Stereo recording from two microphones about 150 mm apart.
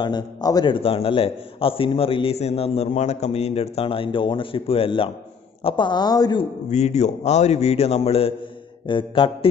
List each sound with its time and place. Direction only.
0.0 s a man's voice: 25° left (ahead or behind)
6.7 s a man's voice: 50° left (ahead or behind)